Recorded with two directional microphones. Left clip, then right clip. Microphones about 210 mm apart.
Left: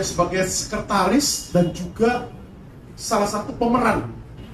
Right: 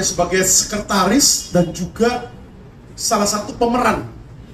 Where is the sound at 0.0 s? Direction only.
50° right (ahead or behind).